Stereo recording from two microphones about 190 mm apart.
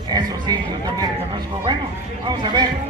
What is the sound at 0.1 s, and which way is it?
Speech, 20° right (ahead or behind).